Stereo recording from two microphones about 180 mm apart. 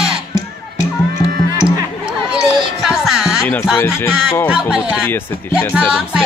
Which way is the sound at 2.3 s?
Centre (ahead or behind).